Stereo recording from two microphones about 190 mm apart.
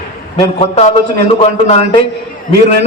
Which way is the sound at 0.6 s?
35° left (ahead or behind).